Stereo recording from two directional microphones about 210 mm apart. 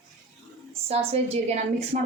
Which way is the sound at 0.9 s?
30° right (ahead or behind).